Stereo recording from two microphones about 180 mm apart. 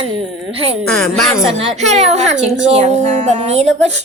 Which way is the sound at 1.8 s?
40° right (ahead or behind).